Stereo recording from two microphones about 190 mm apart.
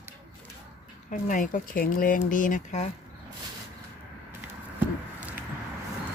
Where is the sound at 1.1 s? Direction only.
45° left (ahead or behind).